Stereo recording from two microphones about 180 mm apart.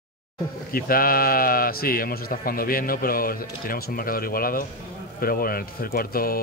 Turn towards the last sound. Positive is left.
turn(degrees=55)  # may be behind; listen again after turning